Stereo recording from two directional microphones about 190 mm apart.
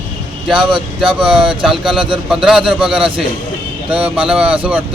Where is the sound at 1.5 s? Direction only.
5° right (ahead or behind).